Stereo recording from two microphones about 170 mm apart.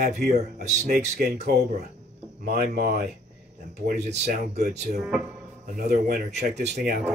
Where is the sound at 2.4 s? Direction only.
60° right (ahead or behind).